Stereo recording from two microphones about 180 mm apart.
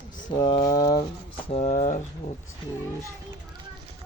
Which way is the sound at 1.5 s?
35° left (ahead or behind).